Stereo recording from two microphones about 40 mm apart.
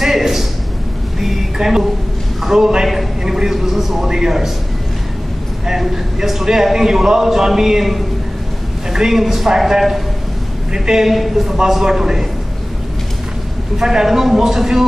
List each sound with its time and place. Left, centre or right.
0.0 s a sound: centre
2.4 s a man's voice: centre
5.7 s a man's voice: centre
10.7 s a man's voice: centre
11.1 s a man's voice: centre
13.7 s a man's voice: centre